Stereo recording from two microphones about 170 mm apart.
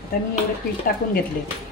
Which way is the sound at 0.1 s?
60° left (ahead or behind).